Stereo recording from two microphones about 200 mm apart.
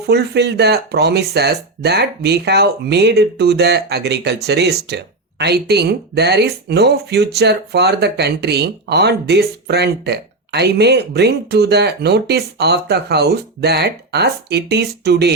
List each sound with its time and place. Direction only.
0.1 s speech: 55° right (ahead or behind)